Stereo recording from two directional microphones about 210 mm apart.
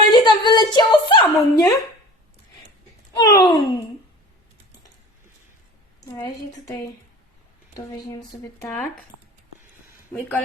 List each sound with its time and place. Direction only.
0.1 s a sound: 20° left (ahead or behind)
3.2 s speech: 15° left (ahead or behind)
7.9 s speech: 15° left (ahead or behind)
8.6 s speech: 5° left (ahead or behind)
10.1 s speech: 5° left (ahead or behind)